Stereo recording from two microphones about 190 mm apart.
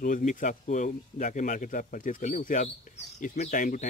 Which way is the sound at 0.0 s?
40° left (ahead or behind).